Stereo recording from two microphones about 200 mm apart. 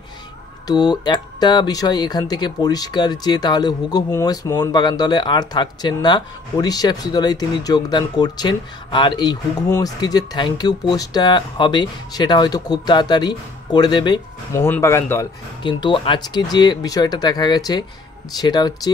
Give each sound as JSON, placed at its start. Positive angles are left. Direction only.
{"t": 0.7, "sound": "speech", "side_deg": 20}
{"t": 15.6, "sound": "speech", "side_deg": 25}